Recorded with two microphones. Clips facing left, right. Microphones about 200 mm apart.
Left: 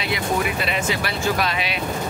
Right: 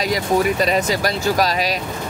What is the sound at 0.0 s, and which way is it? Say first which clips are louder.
Speech: right 5 dB; 40° right (ahead or behind).